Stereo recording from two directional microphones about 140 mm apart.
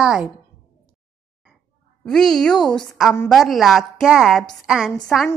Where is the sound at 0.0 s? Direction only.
5° right (ahead or behind).